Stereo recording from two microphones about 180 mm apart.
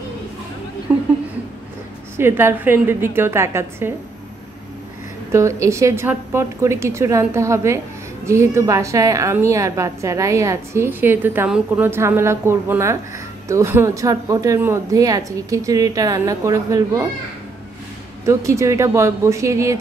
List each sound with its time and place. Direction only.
0.9 s a sound: 10° right (ahead or behind)
2.1 s a woman's voice: 15° right (ahead or behind)
5.3 s a woman's voice: 15° right (ahead or behind)
18.2 s a woman's voice: 15° right (ahead or behind)